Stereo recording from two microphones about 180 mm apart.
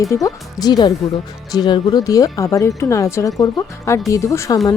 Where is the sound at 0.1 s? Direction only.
20° left (ahead or behind).